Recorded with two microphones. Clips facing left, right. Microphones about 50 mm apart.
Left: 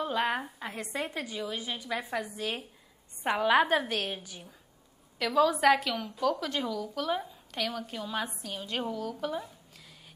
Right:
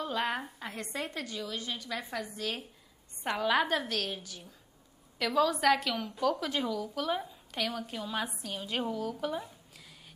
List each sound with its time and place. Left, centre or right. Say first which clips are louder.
0.0 s a woman's voice: left 3 dB; centre
5.2 s a woman's voice: left 3 dB; centre